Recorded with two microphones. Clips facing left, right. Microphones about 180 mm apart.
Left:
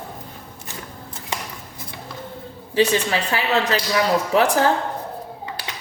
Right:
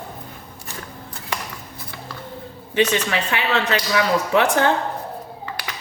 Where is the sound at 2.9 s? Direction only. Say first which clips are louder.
Left 1 dB; 30° left (ahead or behind).